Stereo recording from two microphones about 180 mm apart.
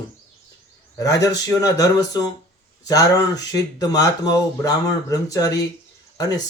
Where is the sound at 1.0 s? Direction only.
20° left (ahead or behind).